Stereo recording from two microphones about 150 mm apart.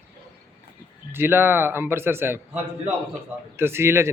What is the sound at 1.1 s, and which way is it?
A man's voice, 15° right (ahead or behind).